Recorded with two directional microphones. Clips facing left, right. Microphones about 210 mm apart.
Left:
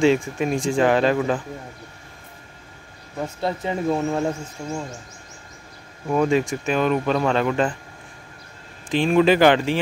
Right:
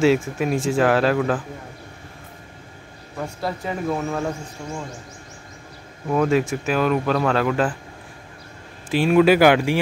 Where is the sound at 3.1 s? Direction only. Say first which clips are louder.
Left 2 dB; 20° left (ahead or behind).